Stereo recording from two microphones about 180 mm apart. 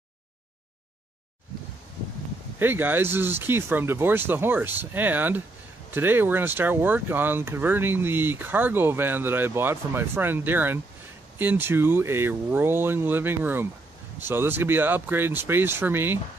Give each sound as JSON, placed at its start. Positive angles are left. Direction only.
{"t": 2.6, "sound": "speech", "side_deg": -10}